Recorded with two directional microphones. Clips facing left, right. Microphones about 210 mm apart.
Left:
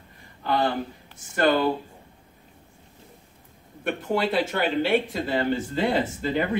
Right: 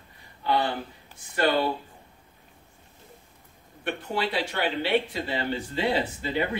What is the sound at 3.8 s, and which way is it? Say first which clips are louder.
Speech: left 4 dB; 45° left (ahead or behind).